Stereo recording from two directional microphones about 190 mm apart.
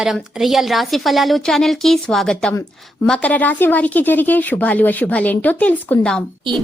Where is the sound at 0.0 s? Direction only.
Centre (ahead or behind).